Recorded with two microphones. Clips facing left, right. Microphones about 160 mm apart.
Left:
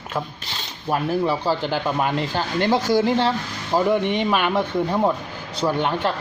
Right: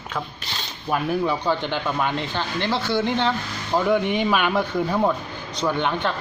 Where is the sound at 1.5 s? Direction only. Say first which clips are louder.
Left 1 dB; 30° left (ahead or behind).